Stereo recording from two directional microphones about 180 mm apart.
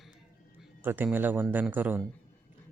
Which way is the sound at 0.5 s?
10° right (ahead or behind).